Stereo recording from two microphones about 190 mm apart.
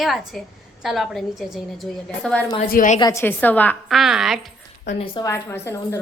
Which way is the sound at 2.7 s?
45° left (ahead or behind).